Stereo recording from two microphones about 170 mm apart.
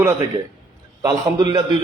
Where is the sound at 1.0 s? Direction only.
25° right (ahead or behind).